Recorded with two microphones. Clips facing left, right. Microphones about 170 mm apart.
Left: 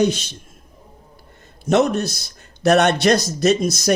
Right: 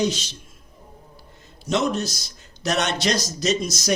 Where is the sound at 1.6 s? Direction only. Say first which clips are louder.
Left 6 dB; 60° left (ahead or behind).